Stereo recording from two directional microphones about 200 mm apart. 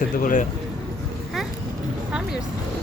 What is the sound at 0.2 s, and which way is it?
Speech, 40° left (ahead or behind).